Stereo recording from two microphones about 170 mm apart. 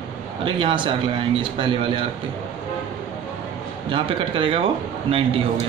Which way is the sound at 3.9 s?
30° right (ahead or behind).